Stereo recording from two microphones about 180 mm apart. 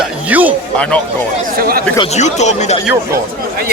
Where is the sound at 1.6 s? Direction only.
55° right (ahead or behind).